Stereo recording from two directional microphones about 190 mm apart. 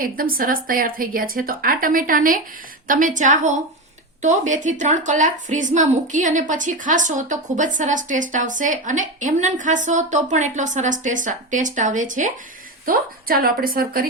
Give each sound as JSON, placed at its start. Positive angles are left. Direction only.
{"t": 0.0, "sound": "a woman's voice", "side_deg": -50}